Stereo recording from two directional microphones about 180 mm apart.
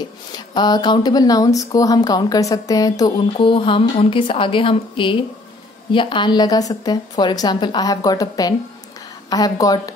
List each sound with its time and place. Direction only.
0.3 s speech: 25° left (ahead or behind)